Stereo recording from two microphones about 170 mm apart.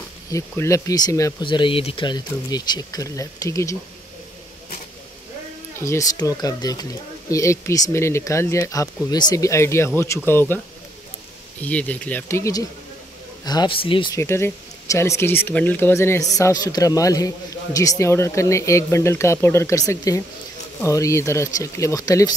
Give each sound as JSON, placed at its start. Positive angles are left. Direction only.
{"t": 0.3, "sound": "speech", "side_deg": 20}
{"t": 5.9, "sound": "speech", "side_deg": 20}
{"t": 11.6, "sound": "speech", "side_deg": 10}
{"t": 14.1, "sound": "speech", "side_deg": 15}